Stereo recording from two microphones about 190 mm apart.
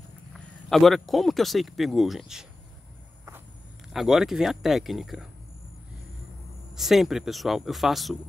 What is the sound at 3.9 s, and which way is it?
Speech, centre (ahead or behind).